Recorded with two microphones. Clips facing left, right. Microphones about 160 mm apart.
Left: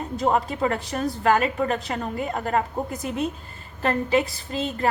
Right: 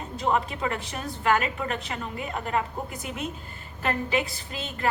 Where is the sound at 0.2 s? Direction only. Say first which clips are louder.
Left 4 dB; 40° left (ahead or behind).